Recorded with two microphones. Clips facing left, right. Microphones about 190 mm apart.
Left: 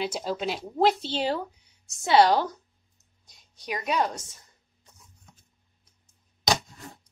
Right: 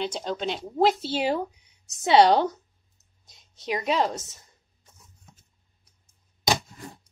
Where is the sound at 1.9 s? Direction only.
20° right (ahead or behind).